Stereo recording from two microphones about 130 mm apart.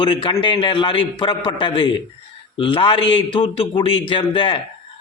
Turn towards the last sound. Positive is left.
turn(degrees=40)  # may be behind; listen again after turning